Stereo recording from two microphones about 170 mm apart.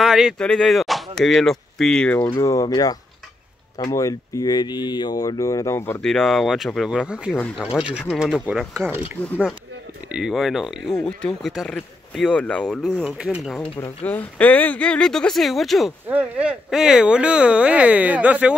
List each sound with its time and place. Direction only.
0.0 s speech: 5° right (ahead or behind)
2.3 s speech: 20° left (ahead or behind)
6.0 s speech: centre (ahead or behind)
7.3 s speech: 10° left (ahead or behind)
8.1 s speech: 5° right (ahead or behind)
10.1 s speech: centre (ahead or behind)
14.0 s speech: 10° left (ahead or behind); by 18.5 s 10° right (ahead or behind)